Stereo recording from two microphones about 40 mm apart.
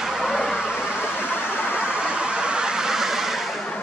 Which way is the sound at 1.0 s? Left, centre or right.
Left.